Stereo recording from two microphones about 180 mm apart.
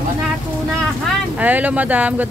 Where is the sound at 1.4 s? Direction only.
10° right (ahead or behind).